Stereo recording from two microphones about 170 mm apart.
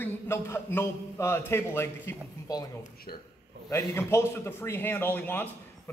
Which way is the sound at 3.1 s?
60° left (ahead or behind).